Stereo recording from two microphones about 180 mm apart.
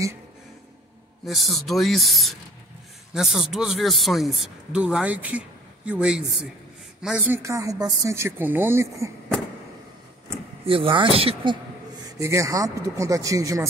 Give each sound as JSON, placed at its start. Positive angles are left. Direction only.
{"t": 1.2, "sound": "a woman's voice", "side_deg": 0}
{"t": 10.6, "sound": "speech", "side_deg": -30}
{"t": 12.0, "sound": "a woman's voice", "side_deg": -20}